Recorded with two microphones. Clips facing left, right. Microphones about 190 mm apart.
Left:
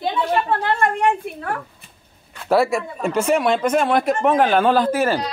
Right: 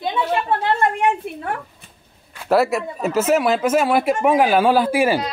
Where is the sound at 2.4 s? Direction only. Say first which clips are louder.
Even; centre (ahead or behind).